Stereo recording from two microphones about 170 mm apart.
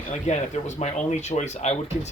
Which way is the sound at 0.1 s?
45° left (ahead or behind).